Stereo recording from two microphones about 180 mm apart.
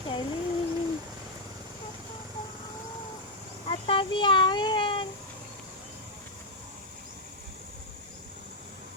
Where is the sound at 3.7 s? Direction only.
30° left (ahead or behind).